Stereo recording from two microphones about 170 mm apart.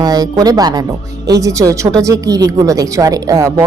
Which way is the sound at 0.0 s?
20° right (ahead or behind).